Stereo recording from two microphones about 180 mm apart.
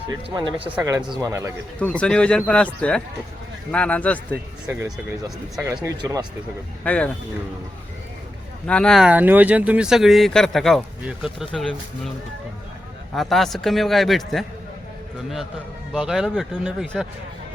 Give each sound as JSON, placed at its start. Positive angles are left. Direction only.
{"t": 0.1, "sound": "a man's voice", "side_deg": -25}
{"t": 2.0, "sound": "speech", "side_deg": 5}
{"t": 5.6, "sound": "speech", "side_deg": -20}
{"t": 6.8, "sound": "speech", "side_deg": 5}
{"t": 8.6, "sound": "speech", "side_deg": 5}
{"t": 13.1, "sound": "speech", "side_deg": 0}
{"t": 15.9, "sound": "speech", "side_deg": -5}